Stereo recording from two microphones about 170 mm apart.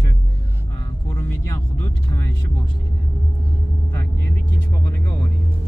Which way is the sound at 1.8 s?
15° left (ahead or behind).